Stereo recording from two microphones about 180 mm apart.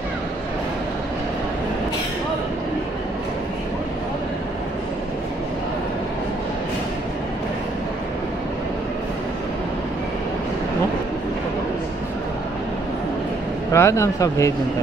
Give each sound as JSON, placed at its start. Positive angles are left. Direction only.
{"t": 13.7, "sound": "speech", "side_deg": 15}